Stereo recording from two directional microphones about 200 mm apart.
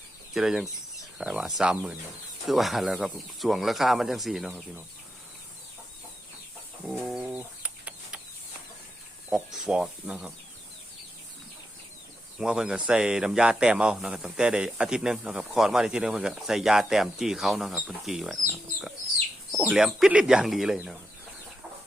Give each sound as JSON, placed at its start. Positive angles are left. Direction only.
{"t": 0.3, "sound": "speech", "side_deg": 0}
{"t": 6.8, "sound": "bird", "side_deg": 0}
{"t": 9.3, "sound": "speech", "side_deg": 0}
{"t": 12.4, "sound": "speech", "side_deg": -5}
{"t": 19.5, "sound": "speech", "side_deg": 0}